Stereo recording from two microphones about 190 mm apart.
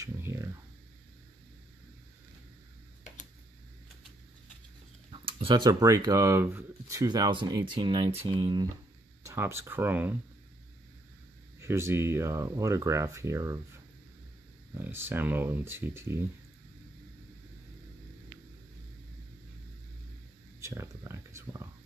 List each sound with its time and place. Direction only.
0.0 s a sound: 15° right (ahead or behind)
5.1 s speech: 25° right (ahead or behind)
9.2 s speech: 15° right (ahead or behind)
11.6 s speech: 15° right (ahead or behind)
14.7 s speech: 10° right (ahead or behind)
20.6 s a sound: 15° right (ahead or behind)